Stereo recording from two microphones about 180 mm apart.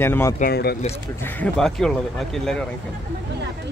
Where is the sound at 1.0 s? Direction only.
10° left (ahead or behind).